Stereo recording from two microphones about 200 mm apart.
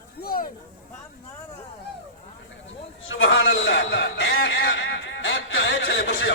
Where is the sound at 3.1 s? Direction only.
75° left (ahead or behind).